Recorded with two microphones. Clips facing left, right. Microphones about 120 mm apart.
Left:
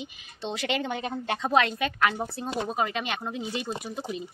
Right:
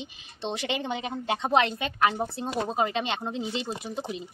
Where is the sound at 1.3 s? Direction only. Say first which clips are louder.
Even; 25° right (ahead or behind).